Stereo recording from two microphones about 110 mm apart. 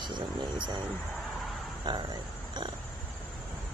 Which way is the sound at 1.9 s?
40° right (ahead or behind).